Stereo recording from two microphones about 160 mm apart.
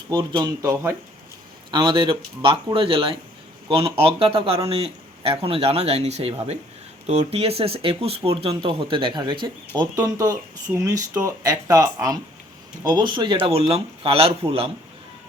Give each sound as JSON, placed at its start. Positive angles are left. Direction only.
{"t": 0.1, "sound": "speech", "side_deg": -30}
{"t": 1.7, "sound": "speech", "side_deg": -30}